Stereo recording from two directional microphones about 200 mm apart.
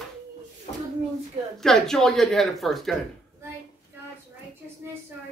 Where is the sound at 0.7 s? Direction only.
30° left (ahead or behind).